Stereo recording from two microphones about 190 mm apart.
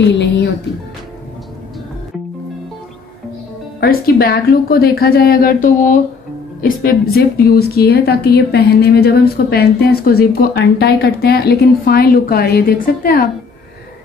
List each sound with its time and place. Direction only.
0.0 s speech: 70° left (ahead or behind)
3.8 s a woman's voice: 55° left (ahead or behind)